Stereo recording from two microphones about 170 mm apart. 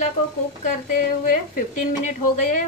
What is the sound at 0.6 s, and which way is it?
A woman's voice, 55° left (ahead or behind).